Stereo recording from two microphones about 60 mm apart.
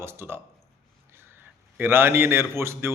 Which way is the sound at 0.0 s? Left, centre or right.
Right.